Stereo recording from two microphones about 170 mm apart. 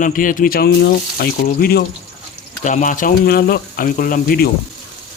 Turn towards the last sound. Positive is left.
turn(degrees=55)  # may be behind; listen again after turning